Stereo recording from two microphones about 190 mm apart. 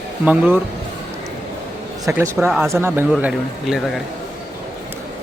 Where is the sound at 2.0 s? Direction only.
15° right (ahead or behind).